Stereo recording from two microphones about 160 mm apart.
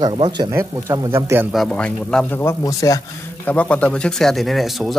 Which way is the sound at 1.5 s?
5° left (ahead or behind).